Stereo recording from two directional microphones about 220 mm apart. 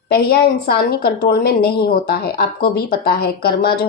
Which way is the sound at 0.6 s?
45° left (ahead or behind).